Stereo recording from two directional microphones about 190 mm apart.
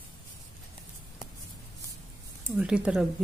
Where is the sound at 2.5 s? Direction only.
5° right (ahead or behind).